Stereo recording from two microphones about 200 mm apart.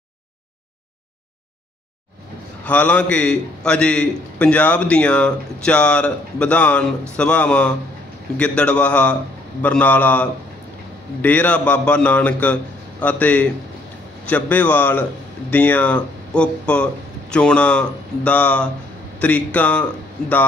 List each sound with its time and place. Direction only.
2.6 s a man's voice: 5° left (ahead or behind)